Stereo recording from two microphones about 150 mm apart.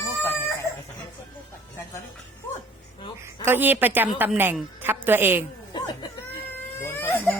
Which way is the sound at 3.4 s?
15° right (ahead or behind).